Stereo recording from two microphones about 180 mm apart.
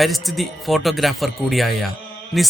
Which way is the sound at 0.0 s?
Centre (ahead or behind).